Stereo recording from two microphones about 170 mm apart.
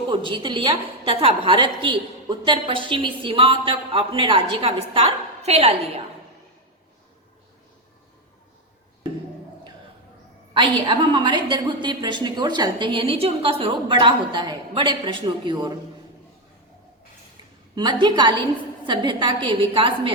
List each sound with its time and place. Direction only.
0.1 s a woman's voice: 30° right (ahead or behind)
10.5 s a woman's voice: 30° right (ahead or behind)
17.7 s a woman's voice: 25° right (ahead or behind)